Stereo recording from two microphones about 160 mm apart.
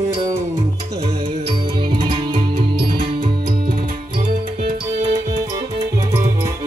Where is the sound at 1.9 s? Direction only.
30° right (ahead or behind).